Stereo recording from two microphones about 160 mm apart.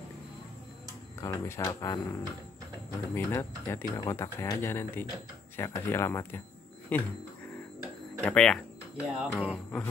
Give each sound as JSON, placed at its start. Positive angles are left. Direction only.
{"t": 1.2, "sound": "speech", "side_deg": 20}
{"t": 8.2, "sound": "speech", "side_deg": 5}
{"t": 8.9, "sound": "speech", "side_deg": -5}
{"t": 9.3, "sound": "speech", "side_deg": 10}